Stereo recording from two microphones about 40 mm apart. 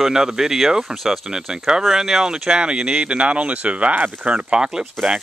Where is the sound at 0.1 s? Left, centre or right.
Centre.